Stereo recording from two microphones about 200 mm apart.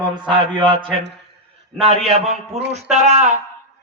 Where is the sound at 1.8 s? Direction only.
30° right (ahead or behind).